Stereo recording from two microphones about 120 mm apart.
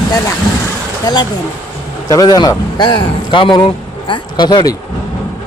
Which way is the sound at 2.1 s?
35° left (ahead or behind).